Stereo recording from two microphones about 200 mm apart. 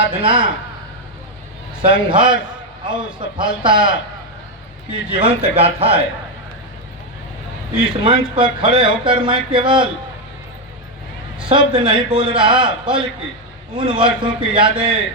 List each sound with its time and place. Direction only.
0.1 s speech: 25° right (ahead or behind)
1.8 s speech: 25° right (ahead or behind)
5.1 s speech: 30° right (ahead or behind)
7.8 s speech: 25° right (ahead or behind)
11.3 s speech: 25° right (ahead or behind)